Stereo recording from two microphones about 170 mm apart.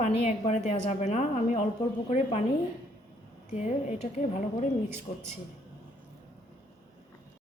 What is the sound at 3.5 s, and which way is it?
Speech, 45° left (ahead or behind).